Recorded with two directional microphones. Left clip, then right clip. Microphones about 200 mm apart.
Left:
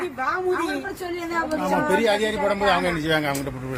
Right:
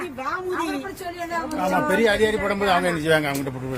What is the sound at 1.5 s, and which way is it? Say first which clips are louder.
Speech: right 1 dB; 25° right (ahead or behind).